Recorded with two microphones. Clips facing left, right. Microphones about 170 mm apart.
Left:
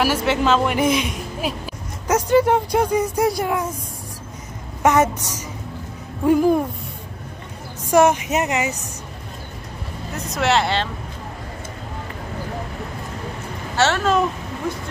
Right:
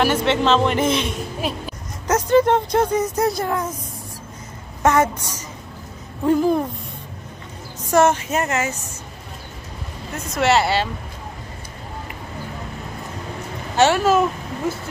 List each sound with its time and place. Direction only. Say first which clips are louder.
0.0 s speech: right 1 dB; 5° left (ahead or behind)
4.8 s speech: left 1 dB; 15° left (ahead or behind)
7.9 s speech: left 1 dB; 10° left (ahead or behind)
10.1 s speech: right 2 dB; centre (ahead or behind)
13.7 s speech: right 3 dB; 10° right (ahead or behind)